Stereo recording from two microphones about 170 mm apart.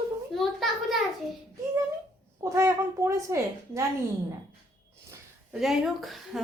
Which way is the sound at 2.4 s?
15° right (ahead or behind).